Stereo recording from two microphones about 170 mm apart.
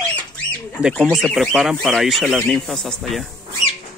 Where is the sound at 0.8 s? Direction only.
5° right (ahead or behind).